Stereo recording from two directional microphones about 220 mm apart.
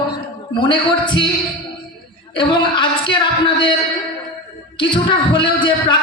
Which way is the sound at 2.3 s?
20° left (ahead or behind).